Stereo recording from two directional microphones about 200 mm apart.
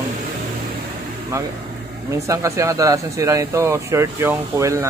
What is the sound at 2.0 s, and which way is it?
Speech, 15° right (ahead or behind).